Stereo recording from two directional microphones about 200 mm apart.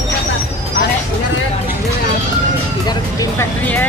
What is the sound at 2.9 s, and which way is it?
Speech, 20° left (ahead or behind).